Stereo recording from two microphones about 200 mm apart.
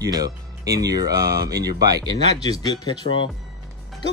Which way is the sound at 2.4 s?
20° left (ahead or behind).